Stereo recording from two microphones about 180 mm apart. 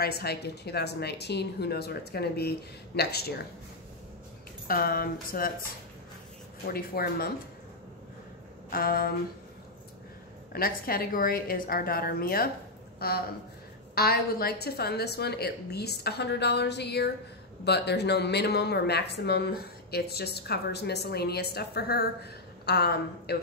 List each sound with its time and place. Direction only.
0.0 s speech: 60° left (ahead or behind)
4.6 s speech: 55° left (ahead or behind)
6.7 s speech: 55° left (ahead or behind)
8.6 s a sound: 55° left (ahead or behind)
10.5 s speech: 55° left (ahead or behind)